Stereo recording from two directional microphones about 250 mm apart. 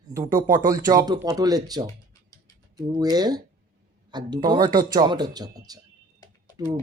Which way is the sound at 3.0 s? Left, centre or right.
Centre.